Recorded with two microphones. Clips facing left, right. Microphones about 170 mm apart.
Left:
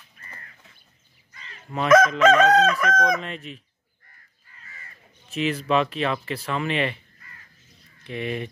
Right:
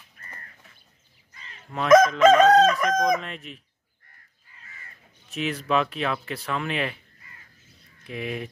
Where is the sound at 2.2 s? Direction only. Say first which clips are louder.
Right 2 dB; 35° right (ahead or behind).